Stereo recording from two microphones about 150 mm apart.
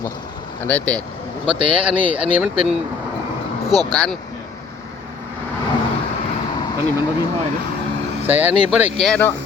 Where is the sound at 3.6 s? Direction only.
25° right (ahead or behind).